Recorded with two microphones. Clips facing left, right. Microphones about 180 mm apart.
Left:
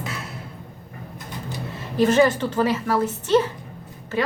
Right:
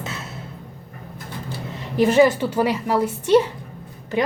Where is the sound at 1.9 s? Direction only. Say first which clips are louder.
Right 2 dB; 15° right (ahead or behind).